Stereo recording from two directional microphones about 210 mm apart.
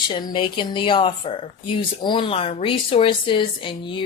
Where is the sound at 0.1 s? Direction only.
20° left (ahead or behind).